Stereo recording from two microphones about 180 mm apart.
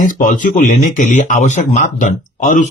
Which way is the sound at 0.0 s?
50° left (ahead or behind).